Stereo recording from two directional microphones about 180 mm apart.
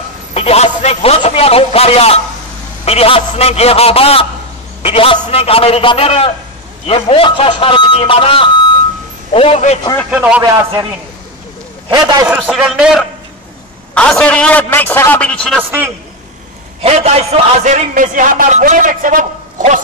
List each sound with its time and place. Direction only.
0.3 s a man's voice: 35° left (ahead or behind)
10.1 s speech: 5° right (ahead or behind)
10.4 s a man's voice: 20° right (ahead or behind)
11.9 s a man's voice: 20° right (ahead or behind)
12.3 s a man's voice: 5° right (ahead or behind)
16.8 s a man's voice: 35° right (ahead or behind)